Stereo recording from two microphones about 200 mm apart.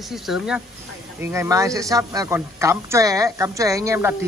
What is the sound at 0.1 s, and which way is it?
Speech, centre (ahead or behind).